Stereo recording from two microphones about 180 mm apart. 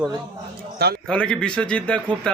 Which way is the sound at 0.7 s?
60° right (ahead or behind).